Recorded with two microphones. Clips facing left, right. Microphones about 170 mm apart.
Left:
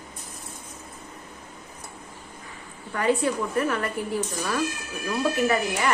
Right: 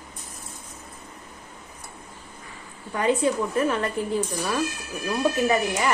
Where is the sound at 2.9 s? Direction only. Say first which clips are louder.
Right 1 dB; 20° right (ahead or behind).